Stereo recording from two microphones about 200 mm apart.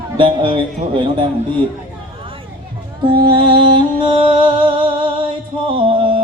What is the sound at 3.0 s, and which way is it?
Music, 25° right (ahead or behind).